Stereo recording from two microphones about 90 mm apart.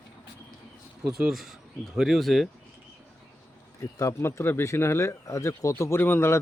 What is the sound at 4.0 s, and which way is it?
Speech, 35° left (ahead or behind).